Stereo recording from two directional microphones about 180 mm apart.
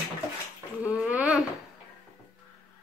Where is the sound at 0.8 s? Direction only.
10° right (ahead or behind).